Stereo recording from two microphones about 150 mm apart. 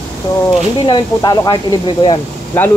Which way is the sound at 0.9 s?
30° left (ahead or behind).